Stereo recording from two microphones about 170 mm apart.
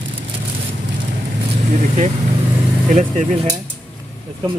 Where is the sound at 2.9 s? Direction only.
45° right (ahead or behind).